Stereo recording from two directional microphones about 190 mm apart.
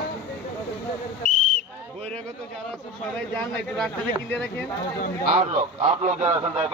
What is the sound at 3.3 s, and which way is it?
Speech, 5° left (ahead or behind).